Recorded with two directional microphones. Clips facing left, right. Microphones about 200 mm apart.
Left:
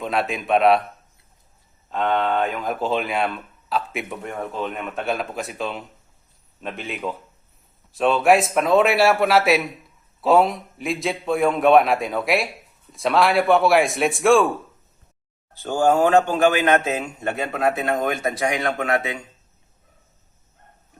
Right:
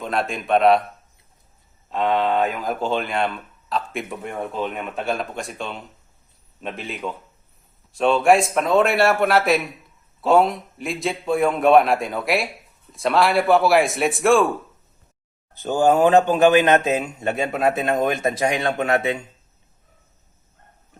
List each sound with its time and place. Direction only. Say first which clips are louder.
0.0 s speech: left 1 dB; centre (ahead or behind)
1.9 s speech: right 1 dB; centre (ahead or behind)
15.6 s a man's voice: right 1 dB; 20° right (ahead or behind)